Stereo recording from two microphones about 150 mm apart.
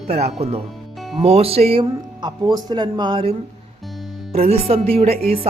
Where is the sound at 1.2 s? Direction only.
45° right (ahead or behind).